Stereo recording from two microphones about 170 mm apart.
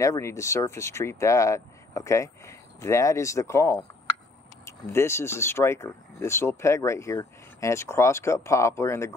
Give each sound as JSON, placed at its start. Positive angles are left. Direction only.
{"t": 0.0, "sound": "speech", "side_deg": 20}